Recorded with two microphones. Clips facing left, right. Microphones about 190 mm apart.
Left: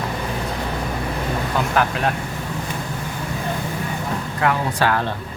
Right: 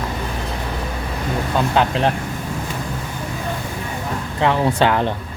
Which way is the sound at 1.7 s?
25° right (ahead or behind).